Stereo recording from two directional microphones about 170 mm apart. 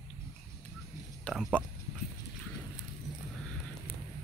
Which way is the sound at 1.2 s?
Centre (ahead or behind).